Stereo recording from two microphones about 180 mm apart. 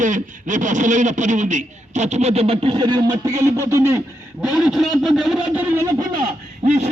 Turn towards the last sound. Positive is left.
turn(degrees=-35)  # may be behind; listen again after turning